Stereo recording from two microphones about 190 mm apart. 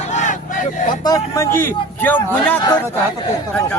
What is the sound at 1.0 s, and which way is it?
A man's voice, 20° left (ahead or behind).